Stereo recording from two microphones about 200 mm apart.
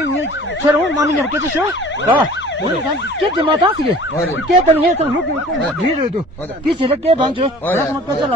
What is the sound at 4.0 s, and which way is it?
Speech, 75° left (ahead or behind).